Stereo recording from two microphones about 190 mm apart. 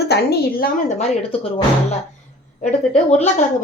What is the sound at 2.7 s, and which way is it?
Speech, 35° left (ahead or behind).